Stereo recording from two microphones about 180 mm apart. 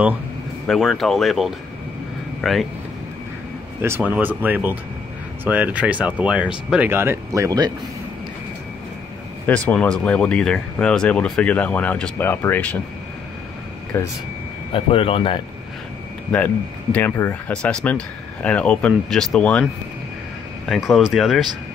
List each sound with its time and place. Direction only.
0.7 s speech: centre (ahead or behind)
3.8 s speech: 10° right (ahead or behind)
9.5 s speech: 5° left (ahead or behind)
13.9 s speech: 15° left (ahead or behind)
14.7 s speech: 30° left (ahead or behind)
16.9 s speech: 10° left (ahead or behind)
20.6 s speech: centre (ahead or behind)